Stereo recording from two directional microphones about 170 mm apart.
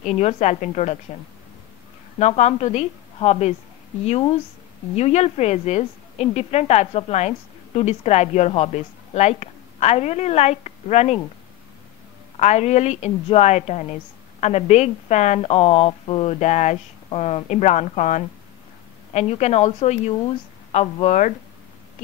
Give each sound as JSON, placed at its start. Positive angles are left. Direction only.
{"t": 0.0, "sound": "a woman's voice", "side_deg": 40}
{"t": 2.1, "sound": "a woman's voice", "side_deg": 40}
{"t": 4.9, "sound": "a woman's voice", "side_deg": 40}
{"t": 12.4, "sound": "a woman's voice", "side_deg": 40}